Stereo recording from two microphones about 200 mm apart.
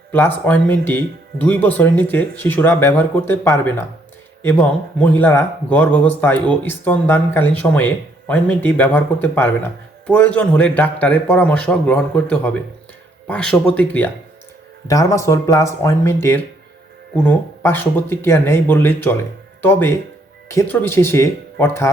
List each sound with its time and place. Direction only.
0.1 s speech: 10° left (ahead or behind)
20.5 s speech: 10° left (ahead or behind)